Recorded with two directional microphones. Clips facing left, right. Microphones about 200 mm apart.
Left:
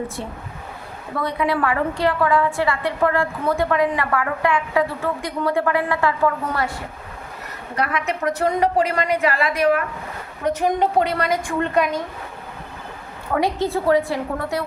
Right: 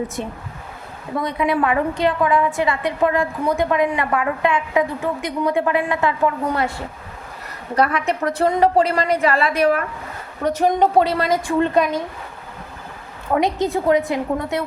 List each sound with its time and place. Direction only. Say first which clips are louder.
1.2 s a woman's voice: right 1 dB; 20° right (ahead or behind)
7.8 s a woman's voice: right 4 dB; 35° right (ahead or behind)
11.2 s a woman's voice: right 3 dB; 25° right (ahead or behind)
13.4 s a woman's voice: even; 20° right (ahead or behind)